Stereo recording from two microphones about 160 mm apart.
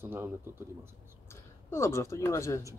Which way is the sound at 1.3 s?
15° left (ahead or behind).